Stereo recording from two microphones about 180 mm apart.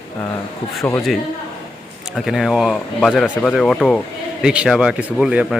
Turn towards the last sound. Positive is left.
turn(degrees=-5)  # may be behind; listen again after turning